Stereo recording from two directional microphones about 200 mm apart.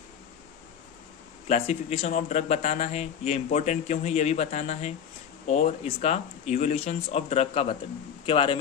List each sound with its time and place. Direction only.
1.5 s speech: 30° left (ahead or behind)